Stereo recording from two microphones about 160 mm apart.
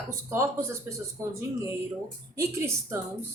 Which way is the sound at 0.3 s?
15° right (ahead or behind).